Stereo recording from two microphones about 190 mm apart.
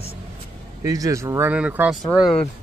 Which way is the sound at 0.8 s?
20° right (ahead or behind).